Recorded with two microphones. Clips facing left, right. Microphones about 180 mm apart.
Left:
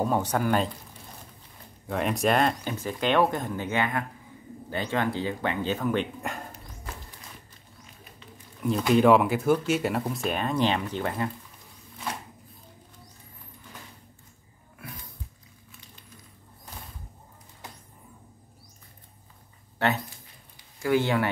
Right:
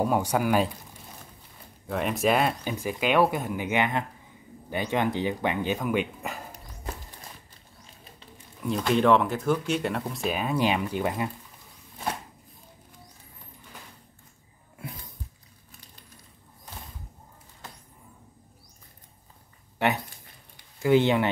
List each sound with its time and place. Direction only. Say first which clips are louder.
0.0 s speech: right 1 dB; 10° right (ahead or behind)
1.9 s speech: even; centre (ahead or behind)
8.6 s speech: left 2 dB; 5° left (ahead or behind); by 11.2 s 10° right (ahead or behind)
14.8 s a sound: right 3 dB; 25° right (ahead or behind)
20.8 s speech: right 3 dB; 20° right (ahead or behind)